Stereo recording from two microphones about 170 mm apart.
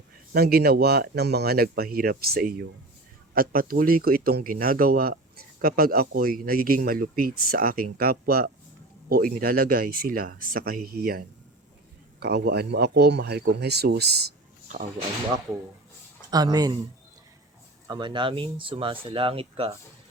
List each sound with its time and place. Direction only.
0.3 s speech: 65° right (ahead or behind)
16.3 s speech: 20° right (ahead or behind)
17.8 s speech: 25° right (ahead or behind)